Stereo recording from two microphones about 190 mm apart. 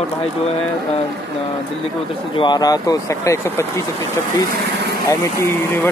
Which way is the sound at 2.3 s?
20° left (ahead or behind).